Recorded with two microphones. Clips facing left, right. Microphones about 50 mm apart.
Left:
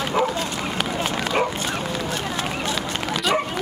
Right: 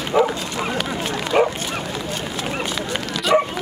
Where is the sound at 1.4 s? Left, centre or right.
Centre.